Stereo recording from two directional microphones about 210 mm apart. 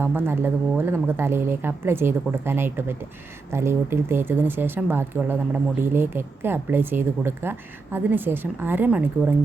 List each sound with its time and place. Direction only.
0.0 s speech: 10° right (ahead or behind)